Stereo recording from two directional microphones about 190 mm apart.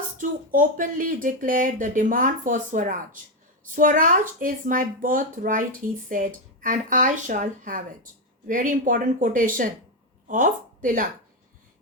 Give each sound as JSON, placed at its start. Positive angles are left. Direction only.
{"t": 0.2, "sound": "a woman's voice", "side_deg": -45}